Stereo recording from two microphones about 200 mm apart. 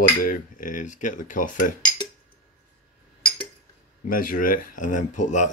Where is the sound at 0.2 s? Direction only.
45° left (ahead or behind).